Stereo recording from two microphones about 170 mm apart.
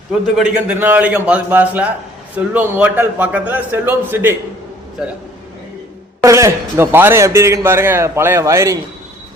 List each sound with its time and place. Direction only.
0.1 s a man's voice: 5° right (ahead or behind)
6.2 s a man's voice: 20° right (ahead or behind)